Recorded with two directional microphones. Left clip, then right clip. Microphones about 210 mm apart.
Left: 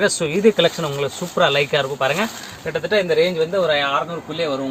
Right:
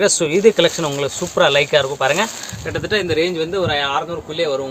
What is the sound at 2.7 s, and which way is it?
Speech, 40° right (ahead or behind).